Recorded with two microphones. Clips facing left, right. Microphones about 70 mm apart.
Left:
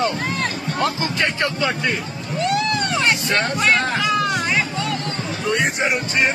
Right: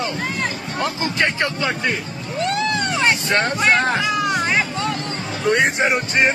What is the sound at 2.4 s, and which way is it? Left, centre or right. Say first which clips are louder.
Hubbub: even; right.